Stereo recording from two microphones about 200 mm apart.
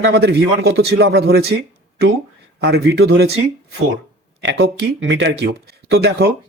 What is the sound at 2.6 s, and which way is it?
Speech, 55° right (ahead or behind).